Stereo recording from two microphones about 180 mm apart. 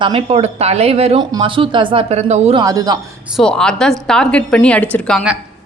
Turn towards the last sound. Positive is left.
turn(degrees=0)  # may be behind; listen again after turning